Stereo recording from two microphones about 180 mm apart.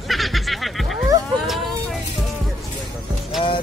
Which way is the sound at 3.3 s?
Centre (ahead or behind).